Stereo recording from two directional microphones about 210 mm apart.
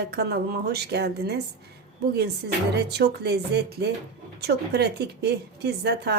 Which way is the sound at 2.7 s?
50° right (ahead or behind).